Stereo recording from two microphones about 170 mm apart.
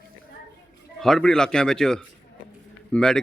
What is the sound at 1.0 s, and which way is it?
Speech, 5° left (ahead or behind).